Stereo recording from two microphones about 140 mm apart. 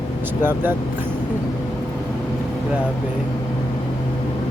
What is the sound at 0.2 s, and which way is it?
Speech, 15° right (ahead or behind).